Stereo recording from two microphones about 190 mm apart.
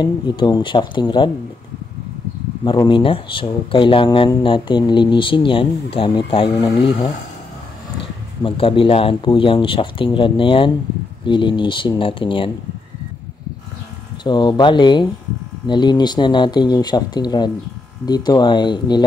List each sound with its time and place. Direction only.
0.0 s speech: 25° left (ahead or behind)
2.6 s speech: 25° left (ahead or behind)
8.4 s speech: 30° left (ahead or behind)
14.2 s speech: 25° left (ahead or behind)